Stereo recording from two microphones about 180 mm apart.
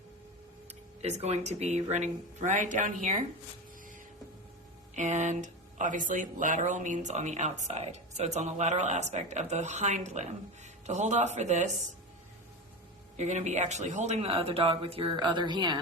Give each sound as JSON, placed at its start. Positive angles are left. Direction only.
{"t": 1.0, "sound": "speech", "side_deg": -40}
{"t": 4.9, "sound": "speech", "side_deg": -40}
{"t": 13.1, "sound": "speech", "side_deg": -40}